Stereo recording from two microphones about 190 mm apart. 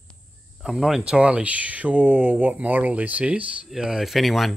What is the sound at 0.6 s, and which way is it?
Speech, centre (ahead or behind).